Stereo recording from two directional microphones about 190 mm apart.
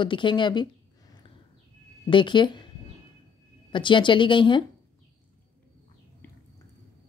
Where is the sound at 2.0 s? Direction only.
25° left (ahead or behind).